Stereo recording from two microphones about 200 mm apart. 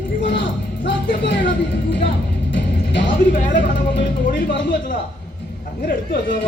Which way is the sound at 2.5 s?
65° left (ahead or behind).